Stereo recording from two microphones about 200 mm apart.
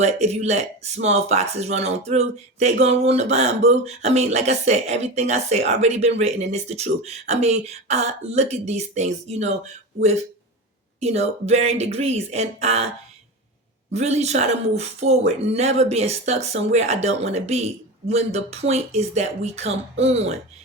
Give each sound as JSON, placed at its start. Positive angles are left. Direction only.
{"t": 0.0, "sound": "speech", "side_deg": -35}
{"t": 11.0, "sound": "speech", "side_deg": -30}
{"t": 13.9, "sound": "speech", "side_deg": -35}